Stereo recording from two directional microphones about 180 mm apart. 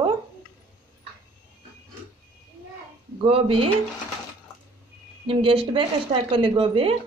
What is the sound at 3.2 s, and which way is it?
Speech, 30° right (ahead or behind).